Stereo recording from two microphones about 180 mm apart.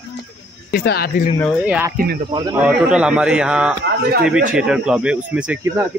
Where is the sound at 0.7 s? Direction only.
60° left (ahead or behind).